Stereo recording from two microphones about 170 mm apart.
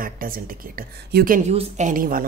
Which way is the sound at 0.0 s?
55° right (ahead or behind).